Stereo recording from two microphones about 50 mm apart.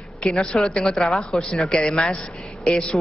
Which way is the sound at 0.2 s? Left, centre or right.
Centre.